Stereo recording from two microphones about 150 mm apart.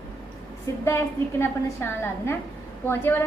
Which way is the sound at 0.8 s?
15° left (ahead or behind).